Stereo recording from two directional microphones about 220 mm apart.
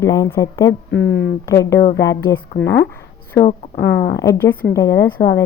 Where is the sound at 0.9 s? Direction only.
55° left (ahead or behind).